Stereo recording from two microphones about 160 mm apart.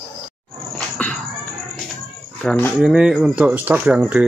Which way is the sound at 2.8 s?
5° right (ahead or behind).